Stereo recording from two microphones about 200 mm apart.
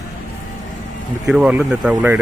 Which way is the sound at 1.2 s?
5° right (ahead or behind).